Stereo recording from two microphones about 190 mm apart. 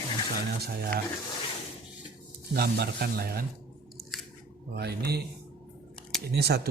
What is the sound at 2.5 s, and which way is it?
Speech, 55° right (ahead or behind).